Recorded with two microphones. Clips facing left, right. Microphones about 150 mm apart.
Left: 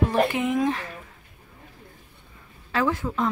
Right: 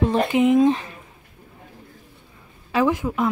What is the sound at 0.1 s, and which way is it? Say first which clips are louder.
Speech: right 5 dB; 20° right (ahead or behind).